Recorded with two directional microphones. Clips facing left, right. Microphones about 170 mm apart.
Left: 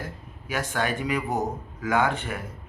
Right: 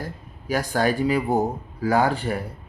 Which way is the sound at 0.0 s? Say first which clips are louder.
Right 3 dB; 35° right (ahead or behind).